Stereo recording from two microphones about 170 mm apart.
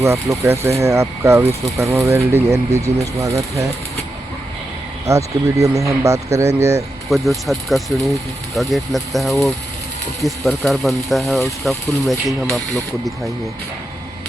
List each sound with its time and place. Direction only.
0.0 s speech: 15° right (ahead or behind)
5.0 s speech: 20° right (ahead or behind)
7.1 s speech: centre (ahead or behind)